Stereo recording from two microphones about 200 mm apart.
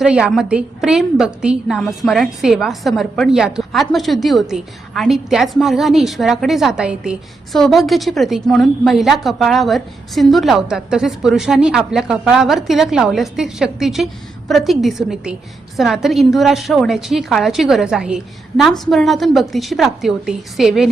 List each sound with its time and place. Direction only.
0.0 s a woman's voice: 5° right (ahead or behind)